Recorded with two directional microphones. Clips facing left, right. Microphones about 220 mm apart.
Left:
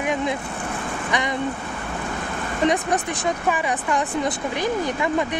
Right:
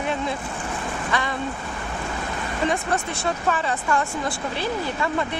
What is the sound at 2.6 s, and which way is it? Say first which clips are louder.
Speech: left 4 dB; 15° left (ahead or behind).